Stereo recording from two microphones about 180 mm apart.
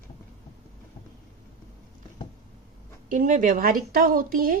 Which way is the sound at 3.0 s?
45° right (ahead or behind).